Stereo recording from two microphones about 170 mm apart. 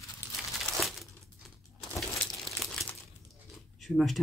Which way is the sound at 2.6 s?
15° left (ahead or behind).